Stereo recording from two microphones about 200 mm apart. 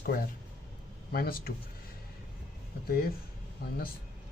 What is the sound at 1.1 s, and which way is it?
Speech, 50° left (ahead or behind).